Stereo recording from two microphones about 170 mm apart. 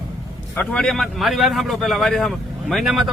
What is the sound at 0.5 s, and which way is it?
A man's voice, 5° left (ahead or behind).